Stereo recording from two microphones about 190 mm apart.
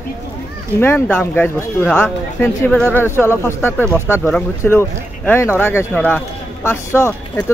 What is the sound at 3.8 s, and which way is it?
Speech, 10° right (ahead or behind).